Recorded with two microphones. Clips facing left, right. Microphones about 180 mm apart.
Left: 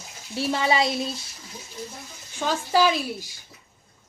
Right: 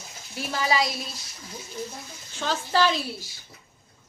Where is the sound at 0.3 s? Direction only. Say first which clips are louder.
Left 3 dB; 25° left (ahead or behind).